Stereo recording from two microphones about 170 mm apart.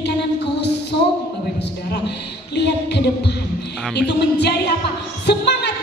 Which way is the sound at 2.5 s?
80° left.